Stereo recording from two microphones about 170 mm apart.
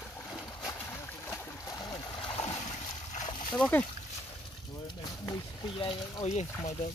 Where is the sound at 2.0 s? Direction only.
30° left (ahead or behind).